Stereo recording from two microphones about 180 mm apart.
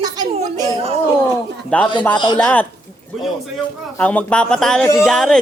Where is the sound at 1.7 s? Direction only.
10° left (ahead or behind).